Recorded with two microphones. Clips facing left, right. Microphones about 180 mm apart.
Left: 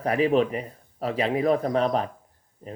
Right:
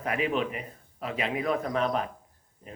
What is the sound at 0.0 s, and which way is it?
Speech, 35° left (ahead or behind).